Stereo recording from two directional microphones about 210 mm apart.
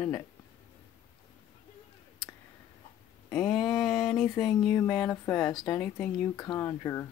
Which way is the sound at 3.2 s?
Centre (ahead or behind).